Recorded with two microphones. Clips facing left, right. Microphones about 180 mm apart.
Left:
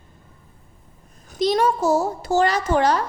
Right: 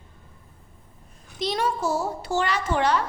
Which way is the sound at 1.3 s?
45° left (ahead or behind).